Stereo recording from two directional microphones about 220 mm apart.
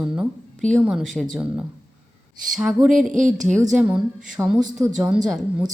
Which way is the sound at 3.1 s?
35° right (ahead or behind).